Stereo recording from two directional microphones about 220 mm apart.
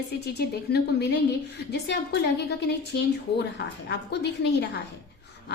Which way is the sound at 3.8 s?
50° left (ahead or behind).